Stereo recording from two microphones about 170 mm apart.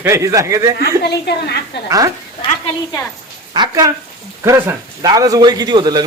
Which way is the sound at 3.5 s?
25° right (ahead or behind).